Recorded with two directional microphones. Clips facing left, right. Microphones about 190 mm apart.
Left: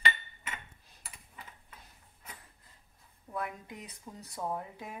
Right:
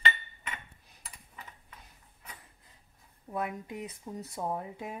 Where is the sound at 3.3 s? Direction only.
20° right (ahead or behind).